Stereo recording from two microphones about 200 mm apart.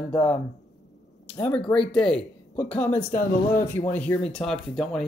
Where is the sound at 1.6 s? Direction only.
25° left (ahead or behind).